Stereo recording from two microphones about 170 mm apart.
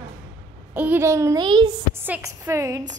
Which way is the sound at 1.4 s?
25° right (ahead or behind).